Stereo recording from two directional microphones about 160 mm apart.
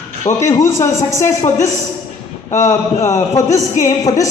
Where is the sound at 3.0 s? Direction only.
20° left (ahead or behind).